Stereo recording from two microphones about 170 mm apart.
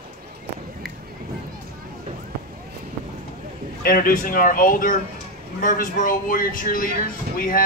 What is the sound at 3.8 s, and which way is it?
Speech, 60° left (ahead or behind).